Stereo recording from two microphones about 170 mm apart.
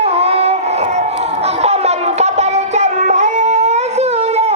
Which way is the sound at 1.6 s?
40° right (ahead or behind).